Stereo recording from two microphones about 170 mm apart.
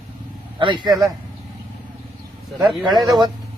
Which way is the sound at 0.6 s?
30° right (ahead or behind).